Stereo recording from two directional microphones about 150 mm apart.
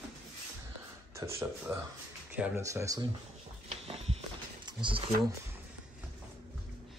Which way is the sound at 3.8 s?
40° right (ahead or behind).